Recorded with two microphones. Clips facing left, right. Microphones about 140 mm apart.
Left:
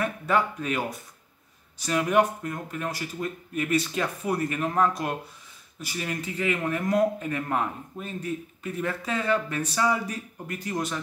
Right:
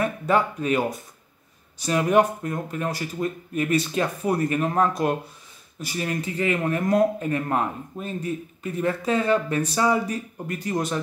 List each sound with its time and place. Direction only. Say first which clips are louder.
0.0 s speech: right 3 dB; 25° right (ahead or behind)
1.9 s speech: right 3 dB; 30° right (ahead or behind)